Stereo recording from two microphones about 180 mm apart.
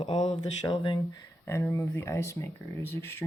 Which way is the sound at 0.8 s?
20° left (ahead or behind).